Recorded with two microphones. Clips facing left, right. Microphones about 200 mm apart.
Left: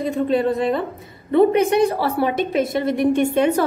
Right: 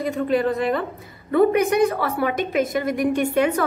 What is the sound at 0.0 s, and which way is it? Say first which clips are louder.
A woman's voice: left 2 dB; 25° left (ahead or behind).